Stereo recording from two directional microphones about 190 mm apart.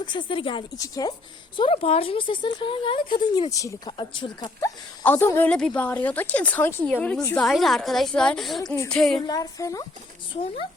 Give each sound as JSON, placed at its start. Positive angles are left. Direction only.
{"t": 0.0, "sound": "speech", "side_deg": 25}
{"t": 5.0, "sound": "speech", "side_deg": 10}
{"t": 7.4, "sound": "a woman's voice", "side_deg": 0}
{"t": 9.2, "sound": "speech", "side_deg": 20}
{"t": 10.3, "sound": "speech", "side_deg": 30}